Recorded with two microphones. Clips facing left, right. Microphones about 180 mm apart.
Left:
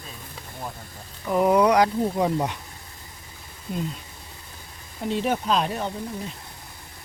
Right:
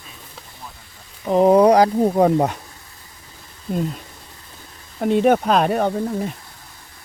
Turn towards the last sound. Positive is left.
turn(degrees=-60)  # may be behind; listen again after turning